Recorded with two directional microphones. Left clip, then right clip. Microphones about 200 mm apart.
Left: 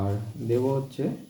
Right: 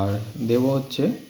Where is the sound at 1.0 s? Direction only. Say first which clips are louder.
Right 7 dB; 40° right (ahead or behind).